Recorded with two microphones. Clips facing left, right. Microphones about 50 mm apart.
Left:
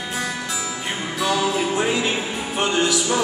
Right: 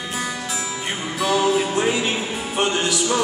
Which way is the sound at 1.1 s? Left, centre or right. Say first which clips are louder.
Right 3 dB; centre.